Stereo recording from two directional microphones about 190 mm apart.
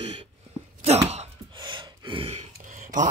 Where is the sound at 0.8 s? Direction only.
35° right (ahead or behind).